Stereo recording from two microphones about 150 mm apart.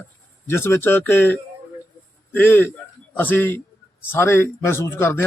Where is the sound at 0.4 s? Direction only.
15° left (ahead or behind).